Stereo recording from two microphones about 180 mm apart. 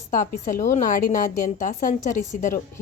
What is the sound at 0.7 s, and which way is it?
A woman's voice, 45° left (ahead or behind).